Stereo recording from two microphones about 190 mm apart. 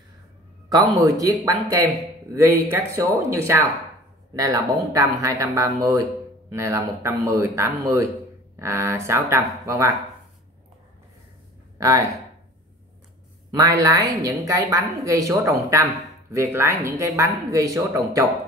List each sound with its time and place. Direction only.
0.9 s a woman's voice: 20° right (ahead or behind)
13.5 s a woman's voice: 20° right (ahead or behind)